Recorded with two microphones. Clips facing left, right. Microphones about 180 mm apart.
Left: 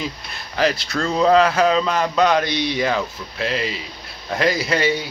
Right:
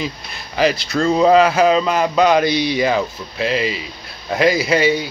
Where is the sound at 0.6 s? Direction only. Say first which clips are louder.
Right 3 dB; centre (ahead or behind).